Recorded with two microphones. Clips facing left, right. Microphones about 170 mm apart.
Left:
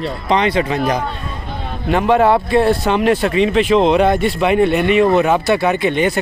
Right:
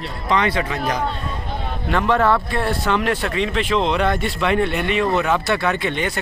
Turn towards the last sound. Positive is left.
turn(degrees=10)  # may be behind; listen again after turning